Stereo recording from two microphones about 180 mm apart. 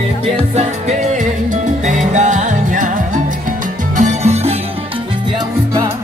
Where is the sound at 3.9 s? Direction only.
40° right (ahead or behind).